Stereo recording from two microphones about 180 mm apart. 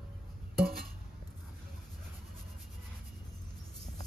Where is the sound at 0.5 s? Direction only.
55° right (ahead or behind).